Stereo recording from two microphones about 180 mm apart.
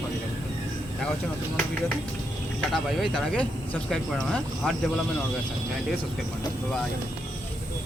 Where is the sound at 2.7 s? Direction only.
Centre (ahead or behind).